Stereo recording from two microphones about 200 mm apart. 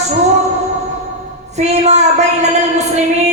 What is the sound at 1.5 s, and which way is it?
A woman's voice, 35° right (ahead or behind).